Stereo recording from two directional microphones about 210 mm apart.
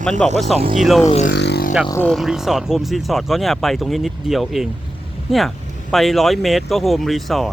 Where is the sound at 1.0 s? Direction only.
30° left (ahead or behind).